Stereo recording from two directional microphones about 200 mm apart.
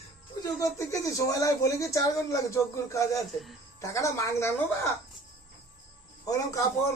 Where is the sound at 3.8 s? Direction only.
15° left (ahead or behind).